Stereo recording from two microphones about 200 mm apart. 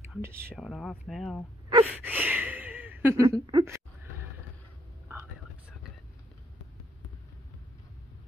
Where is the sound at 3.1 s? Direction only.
25° right (ahead or behind).